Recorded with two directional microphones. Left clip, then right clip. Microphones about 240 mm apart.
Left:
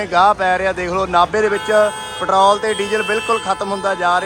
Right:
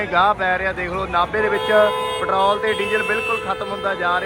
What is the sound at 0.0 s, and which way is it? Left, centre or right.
Speech, centre.